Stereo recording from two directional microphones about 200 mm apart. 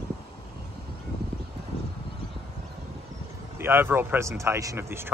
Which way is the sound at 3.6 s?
10° right (ahead or behind).